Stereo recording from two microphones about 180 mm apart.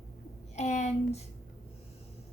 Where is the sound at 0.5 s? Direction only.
40° left (ahead or behind).